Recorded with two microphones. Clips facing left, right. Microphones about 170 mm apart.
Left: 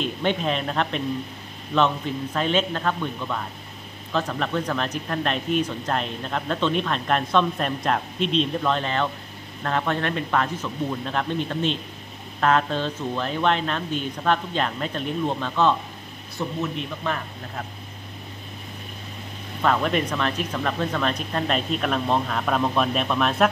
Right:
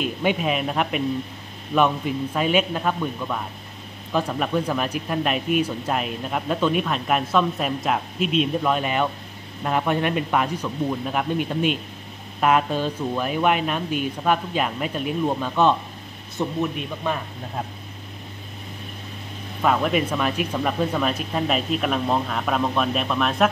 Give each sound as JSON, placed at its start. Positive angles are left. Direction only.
{"t": 0.0, "sound": "a man's voice", "side_deg": -10}
{"t": 19.6, "sound": "speech", "side_deg": -5}